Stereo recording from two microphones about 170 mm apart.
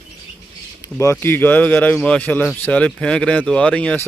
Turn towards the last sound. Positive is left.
turn(degrees=5)  # may be behind; listen again after turning